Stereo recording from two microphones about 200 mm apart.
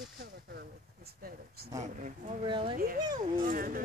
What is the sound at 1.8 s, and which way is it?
Speech, 40° right (ahead or behind).